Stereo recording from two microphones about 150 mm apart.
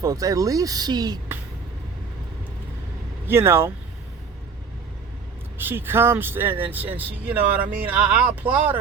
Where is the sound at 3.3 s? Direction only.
15° right (ahead or behind).